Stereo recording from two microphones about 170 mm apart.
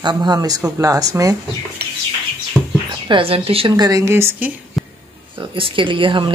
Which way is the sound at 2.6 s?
5° right (ahead or behind).